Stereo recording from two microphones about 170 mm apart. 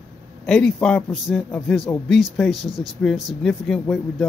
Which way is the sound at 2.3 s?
Centre (ahead or behind).